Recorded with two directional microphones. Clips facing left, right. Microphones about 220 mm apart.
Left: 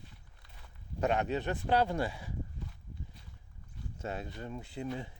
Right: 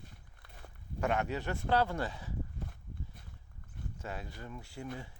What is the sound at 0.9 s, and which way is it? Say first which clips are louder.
Speech: left 2 dB; 20° left (ahead or behind).